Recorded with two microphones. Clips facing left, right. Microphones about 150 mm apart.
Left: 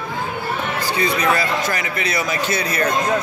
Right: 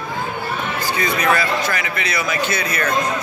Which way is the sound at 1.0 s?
35° left (ahead or behind).